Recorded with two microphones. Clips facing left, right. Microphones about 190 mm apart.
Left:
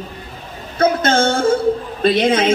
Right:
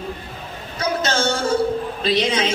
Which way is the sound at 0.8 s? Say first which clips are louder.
Left 7 dB; 55° left (ahead or behind).